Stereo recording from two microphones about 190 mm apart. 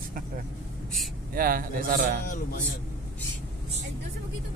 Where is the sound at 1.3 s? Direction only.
50° right (ahead or behind).